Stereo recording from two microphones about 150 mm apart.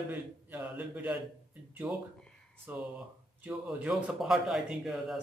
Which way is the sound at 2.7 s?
10° right (ahead or behind).